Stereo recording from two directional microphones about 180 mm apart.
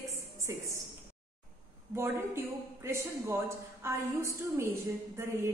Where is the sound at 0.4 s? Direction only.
15° right (ahead or behind).